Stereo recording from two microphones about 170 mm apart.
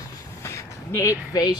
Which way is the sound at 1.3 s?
20° left (ahead or behind).